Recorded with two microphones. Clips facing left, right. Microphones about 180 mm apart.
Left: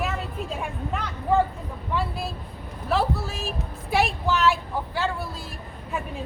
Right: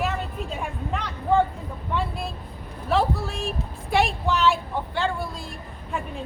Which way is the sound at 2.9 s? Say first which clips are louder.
Right 2 dB; centre (ahead or behind).